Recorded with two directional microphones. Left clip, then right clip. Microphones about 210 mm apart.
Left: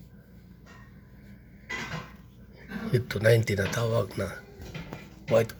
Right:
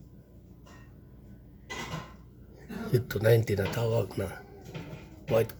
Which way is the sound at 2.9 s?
10° right (ahead or behind).